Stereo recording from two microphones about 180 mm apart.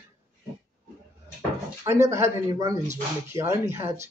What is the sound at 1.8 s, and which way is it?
Speech, 15° right (ahead or behind).